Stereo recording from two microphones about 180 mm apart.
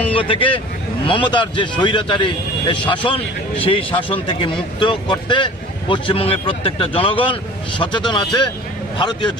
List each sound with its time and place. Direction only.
0.1 s a man's voice: 30° left (ahead or behind)